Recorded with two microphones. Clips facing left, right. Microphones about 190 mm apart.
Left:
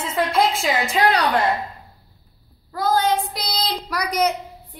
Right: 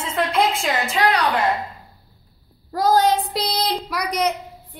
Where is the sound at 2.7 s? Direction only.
35° right (ahead or behind).